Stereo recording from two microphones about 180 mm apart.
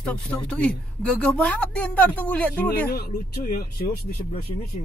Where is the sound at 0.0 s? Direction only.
5° left (ahead or behind).